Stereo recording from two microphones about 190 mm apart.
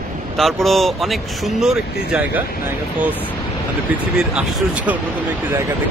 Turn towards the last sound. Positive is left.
turn(degrees=-5)  # may be behind; listen again after turning